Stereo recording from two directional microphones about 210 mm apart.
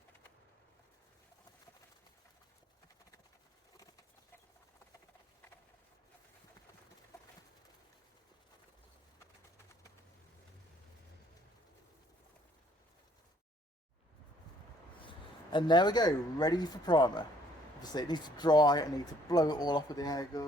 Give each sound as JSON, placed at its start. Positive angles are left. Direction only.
{"t": 15.5, "sound": "speech", "side_deg": 20}